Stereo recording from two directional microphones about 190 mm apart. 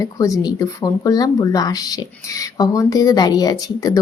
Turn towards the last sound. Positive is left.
turn(degrees=20)  # may be behind; listen again after turning